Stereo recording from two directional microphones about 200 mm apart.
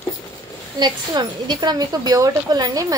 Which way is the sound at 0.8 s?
20° right (ahead or behind).